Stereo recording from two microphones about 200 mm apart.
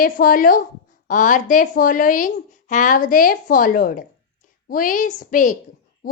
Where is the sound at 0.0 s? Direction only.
45° left (ahead or behind).